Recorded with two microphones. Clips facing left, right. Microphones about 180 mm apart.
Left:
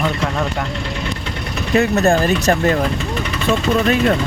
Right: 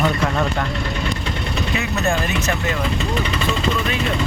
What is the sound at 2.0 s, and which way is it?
Speech, 40° left (ahead or behind).